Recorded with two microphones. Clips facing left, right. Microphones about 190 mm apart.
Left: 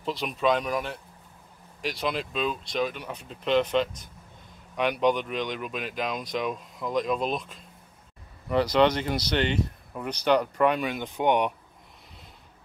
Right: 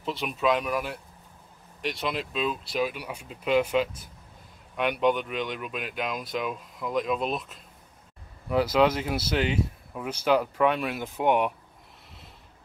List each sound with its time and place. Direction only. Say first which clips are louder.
0.0 s speech: left 1 dB; centre (ahead or behind)